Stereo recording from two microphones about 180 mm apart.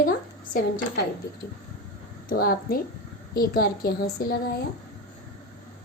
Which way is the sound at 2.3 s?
55° left (ahead or behind).